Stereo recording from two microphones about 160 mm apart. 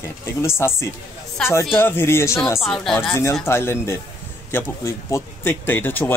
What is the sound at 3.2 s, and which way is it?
Speech, 15° left (ahead or behind).